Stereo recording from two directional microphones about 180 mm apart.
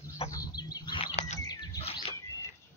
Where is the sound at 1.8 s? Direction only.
35° left (ahead or behind).